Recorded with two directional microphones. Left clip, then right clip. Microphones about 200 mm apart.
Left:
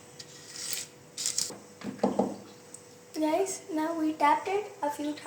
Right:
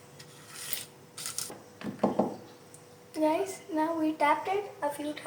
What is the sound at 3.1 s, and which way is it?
A woman's voice, 20° left (ahead or behind).